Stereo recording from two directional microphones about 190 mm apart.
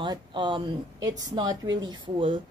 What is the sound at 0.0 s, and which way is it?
A woman's voice, 25° right (ahead or behind).